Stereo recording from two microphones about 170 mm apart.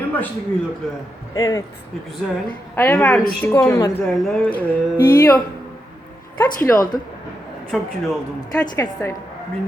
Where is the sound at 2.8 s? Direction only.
15° left (ahead or behind).